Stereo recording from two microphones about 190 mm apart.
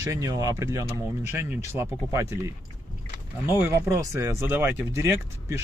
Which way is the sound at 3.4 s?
15° right (ahead or behind).